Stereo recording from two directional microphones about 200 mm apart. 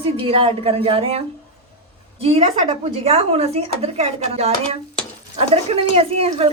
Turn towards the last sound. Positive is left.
turn(degrees=-30)  # may be behind; listen again after turning